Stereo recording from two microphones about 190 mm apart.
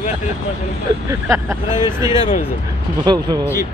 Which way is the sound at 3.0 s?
25° right (ahead or behind).